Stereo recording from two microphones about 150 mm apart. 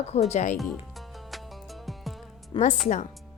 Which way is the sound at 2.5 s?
30° left (ahead or behind).